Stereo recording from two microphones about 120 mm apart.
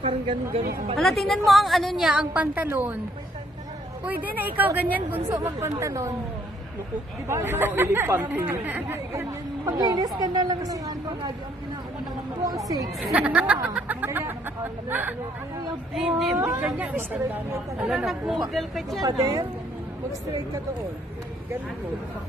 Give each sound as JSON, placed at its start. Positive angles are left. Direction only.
{"t": 0.9, "sound": "a woman's voice", "side_deg": 0}
{"t": 4.0, "sound": "a woman's voice", "side_deg": -15}
{"t": 5.3, "sound": "speech", "side_deg": -25}
{"t": 7.2, "sound": "speech", "side_deg": -20}
{"t": 9.8, "sound": "a woman's voice", "side_deg": -35}
{"t": 12.4, "sound": "speech", "side_deg": -30}
{"t": 13.1, "sound": "a woman's voice", "side_deg": -10}
{"t": 15.9, "sound": "a woman's voice", "side_deg": 0}
{"t": 16.3, "sound": "speech", "side_deg": -25}
{"t": 16.6, "sound": "a woman's voice", "side_deg": -15}
{"t": 17.8, "sound": "a woman's voice", "side_deg": -5}
{"t": 18.9, "sound": "a woman's voice", "side_deg": -30}